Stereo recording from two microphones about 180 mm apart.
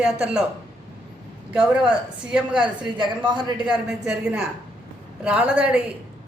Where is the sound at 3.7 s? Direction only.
5° right (ahead or behind).